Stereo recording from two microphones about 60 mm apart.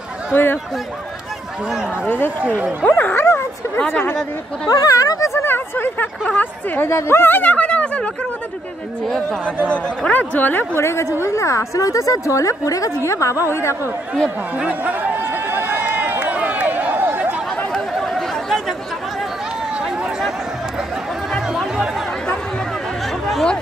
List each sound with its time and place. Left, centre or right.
0.3 s speech: left
2.0 s a woman's voice: left
3.2 s speech: left
4.6 s speech: left
5.3 s a sound: left
6.3 s a woman's voice: left
6.9 s speech: left
7.5 s speech: centre
10.1 s speech: left
10.8 s a woman's voice: left
14.6 s speech: right
15.1 s a sound: right
17.7 s a sound: centre
19.8 s run: centre